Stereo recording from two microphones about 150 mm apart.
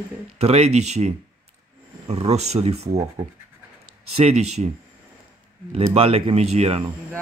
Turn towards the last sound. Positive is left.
turn(degrees=-45)  # may be behind; listen again after turning